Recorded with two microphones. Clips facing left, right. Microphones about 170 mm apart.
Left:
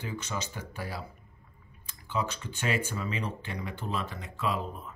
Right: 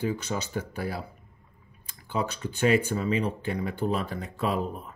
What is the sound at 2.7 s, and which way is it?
Speech, 35° right (ahead or behind).